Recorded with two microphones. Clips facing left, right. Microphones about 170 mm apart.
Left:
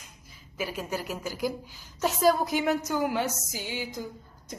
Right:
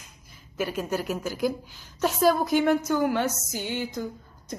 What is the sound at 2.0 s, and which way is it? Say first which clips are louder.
Speech: right 2 dB; 60° right (ahead or behind).